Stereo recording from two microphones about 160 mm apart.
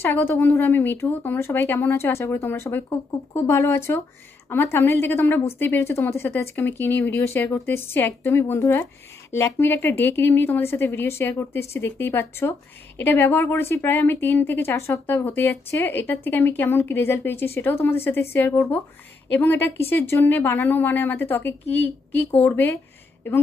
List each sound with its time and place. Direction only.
0.0 s a woman's voice: 15° left (ahead or behind)